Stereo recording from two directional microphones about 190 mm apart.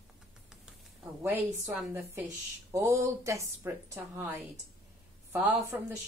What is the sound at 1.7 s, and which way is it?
A woman's voice, 10° right (ahead or behind).